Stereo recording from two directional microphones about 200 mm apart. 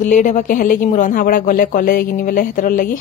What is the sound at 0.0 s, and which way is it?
Speech, 40° left (ahead or behind).